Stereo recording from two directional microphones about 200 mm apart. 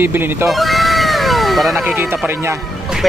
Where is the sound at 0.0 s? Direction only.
10° right (ahead or behind).